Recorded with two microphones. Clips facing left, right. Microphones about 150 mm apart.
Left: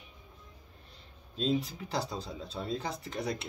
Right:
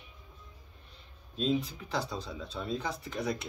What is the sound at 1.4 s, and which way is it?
Speech, 35° left (ahead or behind).